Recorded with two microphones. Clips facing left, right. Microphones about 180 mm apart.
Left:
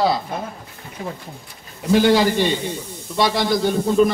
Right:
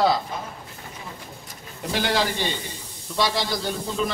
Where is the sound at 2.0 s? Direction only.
60° left (ahead or behind).